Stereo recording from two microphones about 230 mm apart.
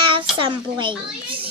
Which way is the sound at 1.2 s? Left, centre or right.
Right.